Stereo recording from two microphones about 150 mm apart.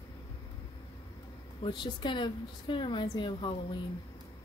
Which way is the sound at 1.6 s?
30° left (ahead or behind).